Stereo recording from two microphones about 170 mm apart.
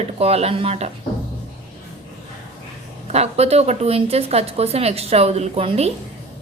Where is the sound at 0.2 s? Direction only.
35° right (ahead or behind).